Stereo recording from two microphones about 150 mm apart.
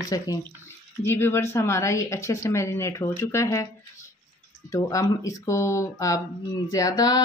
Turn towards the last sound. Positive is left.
turn(degrees=25)  # may be behind; listen again after turning